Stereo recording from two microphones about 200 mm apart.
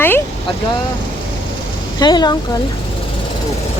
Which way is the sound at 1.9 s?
20° left (ahead or behind).